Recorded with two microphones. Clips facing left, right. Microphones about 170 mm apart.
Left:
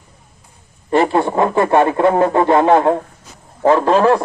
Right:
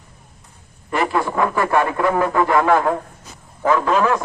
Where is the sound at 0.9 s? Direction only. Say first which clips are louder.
Left 6 dB; 25° left (ahead or behind).